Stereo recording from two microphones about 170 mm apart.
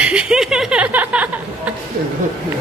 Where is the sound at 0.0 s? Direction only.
5° right (ahead or behind).